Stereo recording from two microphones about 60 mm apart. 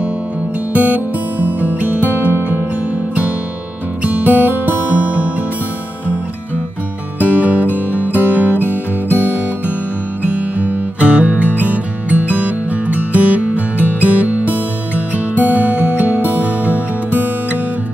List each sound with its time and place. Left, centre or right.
0.7 s music: right
4.0 s music: right
7.2 s music: right